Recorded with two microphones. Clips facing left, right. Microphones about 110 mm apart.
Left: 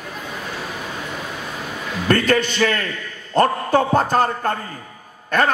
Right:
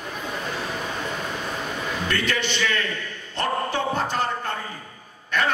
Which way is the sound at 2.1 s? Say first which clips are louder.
Left 11 dB; 45° left (ahead or behind).